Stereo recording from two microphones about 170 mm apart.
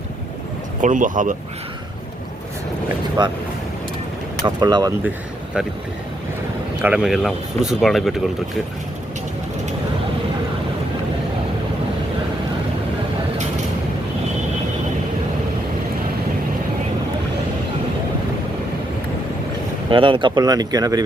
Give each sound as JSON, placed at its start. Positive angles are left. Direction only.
{"t": 0.8, "sound": "speech", "side_deg": -50}
{"t": 3.2, "sound": "speech", "side_deg": -25}
{"t": 4.4, "sound": "speech", "side_deg": -25}
{"t": 6.8, "sound": "speech", "side_deg": -5}
{"t": 19.9, "sound": "speech", "side_deg": -30}